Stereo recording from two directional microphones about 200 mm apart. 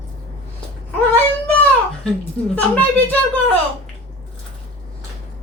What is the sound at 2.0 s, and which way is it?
Speech, 5° left (ahead or behind).